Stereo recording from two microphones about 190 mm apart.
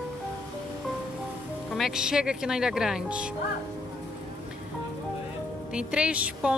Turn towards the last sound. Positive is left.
turn(degrees=-5)  # may be behind; listen again after turning